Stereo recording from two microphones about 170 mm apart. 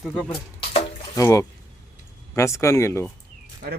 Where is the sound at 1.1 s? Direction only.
20° left (ahead or behind).